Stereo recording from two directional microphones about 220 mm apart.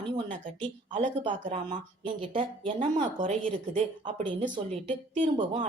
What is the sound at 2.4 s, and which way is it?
Speech, 25° right (ahead or behind).